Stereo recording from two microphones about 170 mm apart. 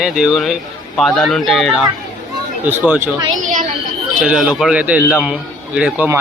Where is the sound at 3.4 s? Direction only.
50° right (ahead or behind).